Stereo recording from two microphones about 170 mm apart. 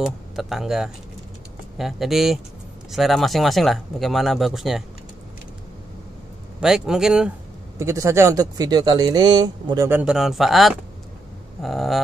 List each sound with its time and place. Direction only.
0.0 s speech: centre (ahead or behind)
6.6 s speech: 5° right (ahead or behind)
7.8 s speech: 15° right (ahead or behind)
9.8 s speech: 5° right (ahead or behind)